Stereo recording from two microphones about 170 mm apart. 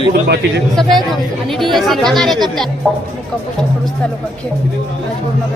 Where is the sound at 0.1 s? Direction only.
80° right.